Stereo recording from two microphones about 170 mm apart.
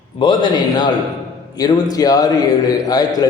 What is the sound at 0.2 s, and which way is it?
A man's voice, 25° left (ahead or behind).